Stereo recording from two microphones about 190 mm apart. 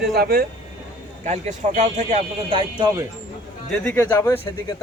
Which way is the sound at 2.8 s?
15° right (ahead or behind).